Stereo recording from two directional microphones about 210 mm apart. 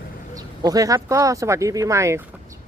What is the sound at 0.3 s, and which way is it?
Speech, 15° right (ahead or behind).